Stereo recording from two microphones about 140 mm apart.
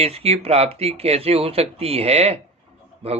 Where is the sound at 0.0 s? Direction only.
45° right (ahead or behind).